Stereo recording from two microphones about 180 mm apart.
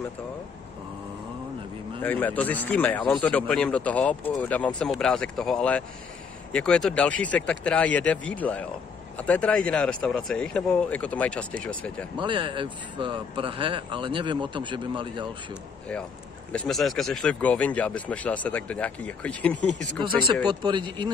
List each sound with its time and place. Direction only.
2.0 s speech: 10° left (ahead or behind)
12.2 s speech: 25° right (ahead or behind)
16.5 s speech: centre (ahead or behind)
20.4 s speech: 25° right (ahead or behind)